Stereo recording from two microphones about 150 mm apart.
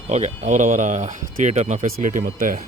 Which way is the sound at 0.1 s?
50° right (ahead or behind).